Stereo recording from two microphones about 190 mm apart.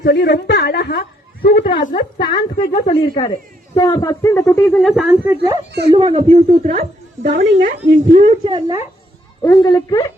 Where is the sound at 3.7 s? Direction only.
15° left (ahead or behind).